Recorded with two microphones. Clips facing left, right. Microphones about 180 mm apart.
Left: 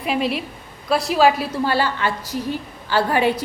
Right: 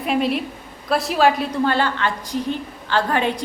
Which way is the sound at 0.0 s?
Centre (ahead or behind).